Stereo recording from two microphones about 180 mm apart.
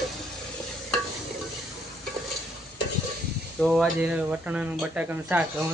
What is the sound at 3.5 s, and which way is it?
Speech, centre (ahead or behind).